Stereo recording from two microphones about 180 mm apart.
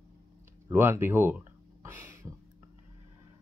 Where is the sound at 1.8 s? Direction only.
15° right (ahead or behind).